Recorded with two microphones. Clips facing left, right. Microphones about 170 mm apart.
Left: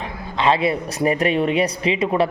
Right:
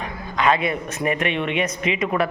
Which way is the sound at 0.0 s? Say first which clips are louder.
Left 1 dB; 30° left (ahead or behind).